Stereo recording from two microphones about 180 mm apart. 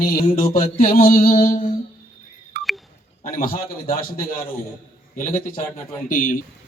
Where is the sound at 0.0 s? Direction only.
55° left (ahead or behind).